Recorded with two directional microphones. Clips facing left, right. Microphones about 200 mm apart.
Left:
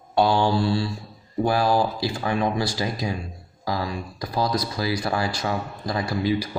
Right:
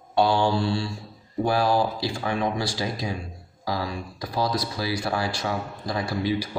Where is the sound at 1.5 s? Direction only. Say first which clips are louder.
Left 1 dB; 45° left (ahead or behind).